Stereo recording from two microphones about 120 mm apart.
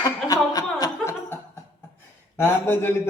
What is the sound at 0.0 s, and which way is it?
Chuckle, 30° left (ahead or behind).